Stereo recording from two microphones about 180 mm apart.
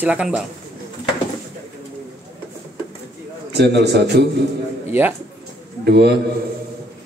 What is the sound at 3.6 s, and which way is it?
Speech, 65° right (ahead or behind).